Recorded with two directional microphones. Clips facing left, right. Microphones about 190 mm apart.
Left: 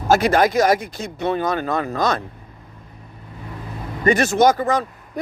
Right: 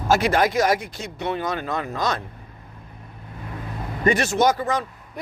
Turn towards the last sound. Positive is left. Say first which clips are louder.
# left 4 dB
turn(degrees=45)  # may be behind; listen again after turning